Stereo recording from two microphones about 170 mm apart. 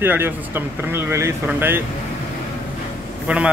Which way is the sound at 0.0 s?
10° right (ahead or behind).